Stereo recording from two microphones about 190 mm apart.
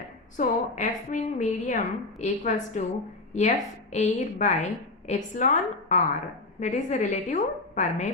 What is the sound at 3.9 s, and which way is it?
A woman's voice, 40° left (ahead or behind).